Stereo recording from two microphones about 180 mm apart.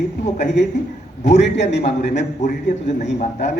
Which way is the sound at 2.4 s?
45° left (ahead or behind).